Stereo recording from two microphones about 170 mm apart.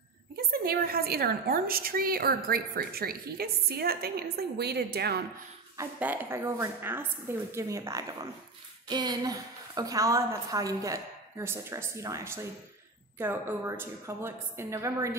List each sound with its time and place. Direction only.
0.5 s a woman's voice: 60° right (ahead or behind)
5.8 s a woman's voice: 10° right (ahead or behind)